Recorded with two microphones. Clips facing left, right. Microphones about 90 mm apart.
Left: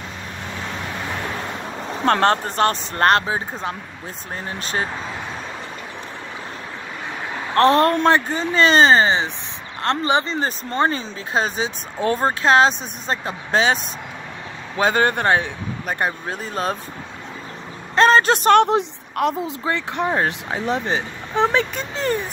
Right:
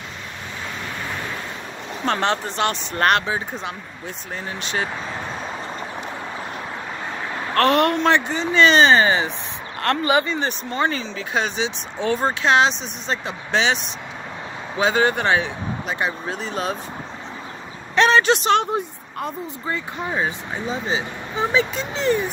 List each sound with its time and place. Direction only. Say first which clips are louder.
2.0 s speech: left 4 dB; 45° left (ahead or behind)
7.5 s speech: left 3 dB; 30° left (ahead or behind)
14.8 s speech: left 1 dB; 50° left (ahead or behind)
17.9 s speech: left 2 dB; 40° left (ahead or behind)
18.7 s speech: left 5 dB; 80° left; by 22.2 s 45° left (ahead or behind)